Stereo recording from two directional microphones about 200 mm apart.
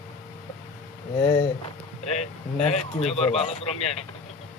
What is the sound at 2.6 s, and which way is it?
Speech, 30° left (ahead or behind).